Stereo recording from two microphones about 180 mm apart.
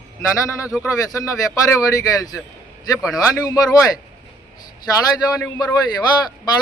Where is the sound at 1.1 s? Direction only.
20° left (ahead or behind).